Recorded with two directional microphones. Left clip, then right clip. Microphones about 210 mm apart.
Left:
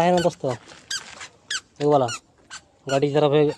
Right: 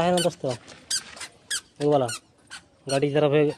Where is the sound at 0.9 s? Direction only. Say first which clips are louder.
Even; 45° left (ahead or behind).